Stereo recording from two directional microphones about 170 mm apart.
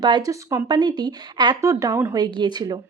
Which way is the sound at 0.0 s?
25° right (ahead or behind).